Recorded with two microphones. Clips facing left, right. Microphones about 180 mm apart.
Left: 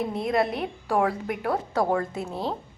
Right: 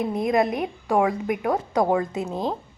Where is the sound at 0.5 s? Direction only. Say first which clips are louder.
Right 3 dB; 10° right (ahead or behind).